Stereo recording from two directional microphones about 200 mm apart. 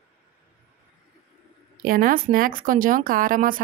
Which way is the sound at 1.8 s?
45° right (ahead or behind).